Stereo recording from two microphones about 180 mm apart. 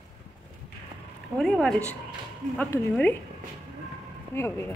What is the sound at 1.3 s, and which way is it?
Speech, centre (ahead or behind).